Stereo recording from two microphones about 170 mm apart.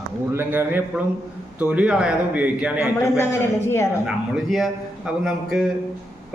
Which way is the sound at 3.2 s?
15° left (ahead or behind).